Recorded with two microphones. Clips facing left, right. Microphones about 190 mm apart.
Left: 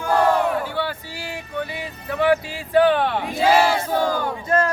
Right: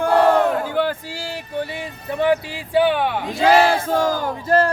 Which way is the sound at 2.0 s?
25° right (ahead or behind).